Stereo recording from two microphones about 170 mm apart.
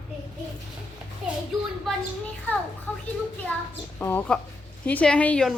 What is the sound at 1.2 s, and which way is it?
Speech, centre (ahead or behind).